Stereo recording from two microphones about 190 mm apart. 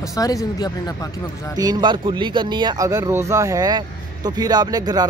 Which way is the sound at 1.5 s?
20° right (ahead or behind).